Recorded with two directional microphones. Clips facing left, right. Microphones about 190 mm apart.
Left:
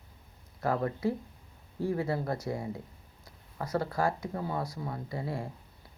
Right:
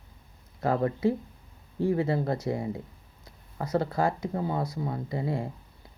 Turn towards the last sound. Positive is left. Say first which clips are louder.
# right 5 dB
turn(degrees=-20)  # may be behind; listen again after turning